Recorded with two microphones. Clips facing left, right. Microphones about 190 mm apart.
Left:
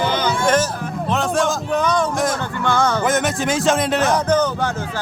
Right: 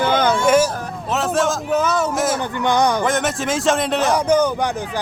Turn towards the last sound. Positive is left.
turn(degrees=-10)  # may be behind; listen again after turning